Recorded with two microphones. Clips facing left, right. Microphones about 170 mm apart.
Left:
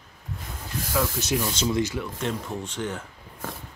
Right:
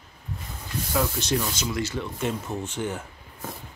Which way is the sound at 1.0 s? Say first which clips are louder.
Even; 5° right (ahead or behind).